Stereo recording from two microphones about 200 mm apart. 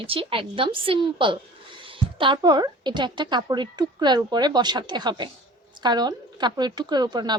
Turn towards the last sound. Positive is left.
turn(degrees=-20)  # may be behind; listen again after turning